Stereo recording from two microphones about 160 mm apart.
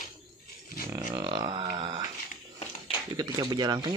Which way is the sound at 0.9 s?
20° right (ahead or behind).